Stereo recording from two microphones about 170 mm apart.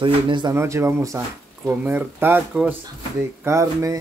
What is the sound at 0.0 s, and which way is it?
Speech, 25° right (ahead or behind).